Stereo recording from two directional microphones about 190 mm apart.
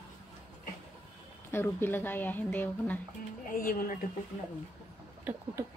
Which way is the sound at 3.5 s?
50° left (ahead or behind).